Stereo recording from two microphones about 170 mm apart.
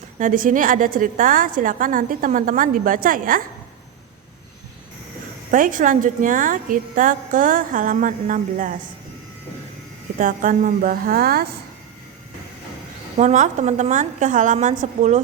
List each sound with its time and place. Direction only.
0.2 s a woman's voice: 50° right (ahead or behind)
5.5 s a woman's voice: 50° right (ahead or behind)
10.2 s a woman's voice: 50° right (ahead or behind)
13.1 s a woman's voice: 45° right (ahead or behind)